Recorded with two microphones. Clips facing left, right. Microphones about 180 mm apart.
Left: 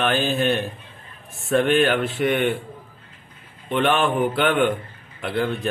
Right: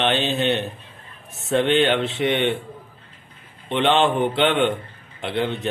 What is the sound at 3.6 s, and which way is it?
Speech, 20° right (ahead or behind).